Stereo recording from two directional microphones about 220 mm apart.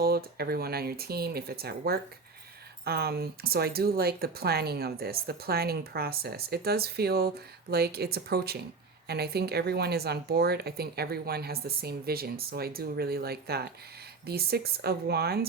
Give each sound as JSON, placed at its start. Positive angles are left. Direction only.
{"t": 0.0, "sound": "speech", "side_deg": -45}